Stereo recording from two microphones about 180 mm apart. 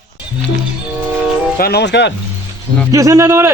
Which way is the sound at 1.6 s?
60° left (ahead or behind).